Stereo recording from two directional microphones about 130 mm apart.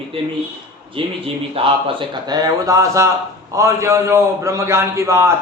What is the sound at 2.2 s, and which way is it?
A man's voice, 30° right (ahead or behind).